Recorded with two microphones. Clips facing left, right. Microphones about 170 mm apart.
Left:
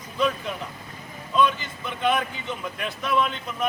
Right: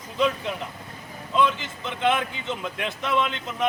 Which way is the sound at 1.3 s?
20° right (ahead or behind).